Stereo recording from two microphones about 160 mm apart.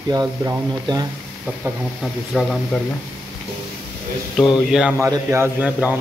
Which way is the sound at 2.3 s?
Centre (ahead or behind).